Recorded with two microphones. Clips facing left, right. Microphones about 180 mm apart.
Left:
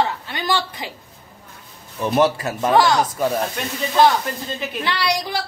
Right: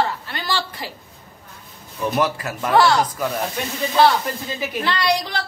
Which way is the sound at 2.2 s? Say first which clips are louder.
Left 6 dB; 25° left (ahead or behind).